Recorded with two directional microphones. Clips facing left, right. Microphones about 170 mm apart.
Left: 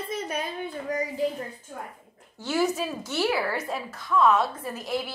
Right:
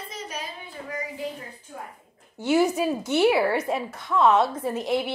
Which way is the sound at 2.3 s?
20° right (ahead or behind).